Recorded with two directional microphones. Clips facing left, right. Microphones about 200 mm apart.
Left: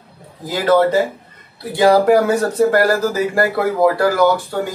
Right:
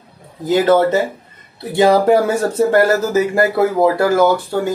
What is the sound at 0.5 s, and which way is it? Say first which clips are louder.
Speech: right 2 dB; 25° right (ahead or behind).